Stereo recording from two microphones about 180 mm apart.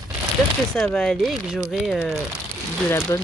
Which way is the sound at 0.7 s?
5° left (ahead or behind).